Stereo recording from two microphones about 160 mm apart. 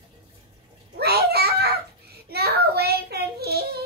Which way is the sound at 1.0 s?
85° right.